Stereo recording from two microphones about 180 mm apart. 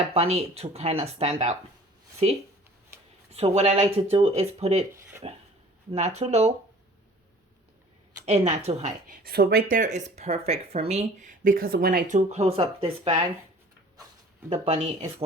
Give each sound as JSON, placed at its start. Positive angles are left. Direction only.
{"t": 0.1, "sound": "speech", "side_deg": -35}
{"t": 3.3, "sound": "speech", "side_deg": -35}
{"t": 8.2, "sound": "speech", "side_deg": -40}
{"t": 9.2, "sound": "speech", "side_deg": -60}
{"t": 14.5, "sound": "speech", "side_deg": -35}